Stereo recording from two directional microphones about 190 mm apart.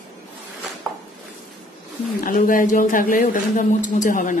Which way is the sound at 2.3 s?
45° left (ahead or behind).